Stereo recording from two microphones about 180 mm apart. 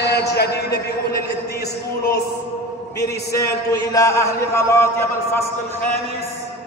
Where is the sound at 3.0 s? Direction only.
20° left (ahead or behind).